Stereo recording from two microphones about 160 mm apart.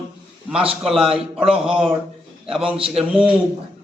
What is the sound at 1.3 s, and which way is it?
Speech, 5° right (ahead or behind).